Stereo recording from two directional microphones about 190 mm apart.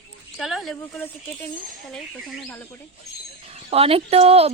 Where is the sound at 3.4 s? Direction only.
30° right (ahead or behind).